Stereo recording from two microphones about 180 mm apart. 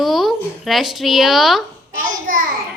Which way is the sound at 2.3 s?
50° right (ahead or behind).